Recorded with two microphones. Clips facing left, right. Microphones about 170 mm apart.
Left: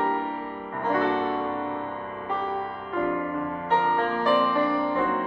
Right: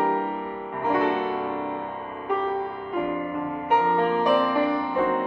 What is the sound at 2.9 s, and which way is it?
Music, 15° right (ahead or behind).